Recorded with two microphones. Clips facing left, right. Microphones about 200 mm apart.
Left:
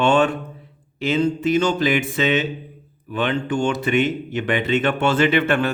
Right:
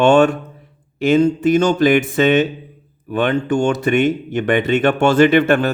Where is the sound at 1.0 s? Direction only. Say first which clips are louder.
Right 6 dB; 45° right (ahead or behind).